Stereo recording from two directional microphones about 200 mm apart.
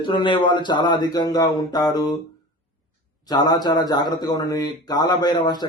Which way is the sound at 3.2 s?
20° left (ahead or behind).